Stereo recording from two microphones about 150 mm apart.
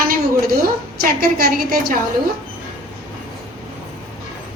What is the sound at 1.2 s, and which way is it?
Speech, 85° right.